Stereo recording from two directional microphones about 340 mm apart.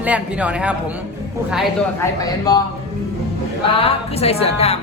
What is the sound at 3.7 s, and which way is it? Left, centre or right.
Speech, centre.